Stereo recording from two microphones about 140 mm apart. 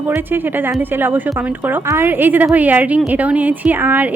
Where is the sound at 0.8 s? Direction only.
15° right (ahead or behind).